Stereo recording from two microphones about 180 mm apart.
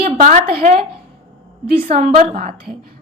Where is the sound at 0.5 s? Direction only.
40° right (ahead or behind).